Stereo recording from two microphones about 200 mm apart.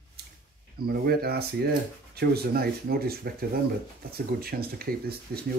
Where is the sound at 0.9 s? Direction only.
50° right (ahead or behind).